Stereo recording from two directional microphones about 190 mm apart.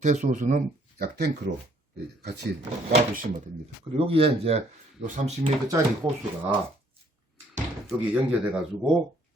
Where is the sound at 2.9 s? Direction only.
45° right (ahead or behind).